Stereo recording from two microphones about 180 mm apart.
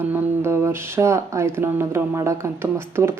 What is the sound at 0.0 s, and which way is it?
Speech, 10° right (ahead or behind).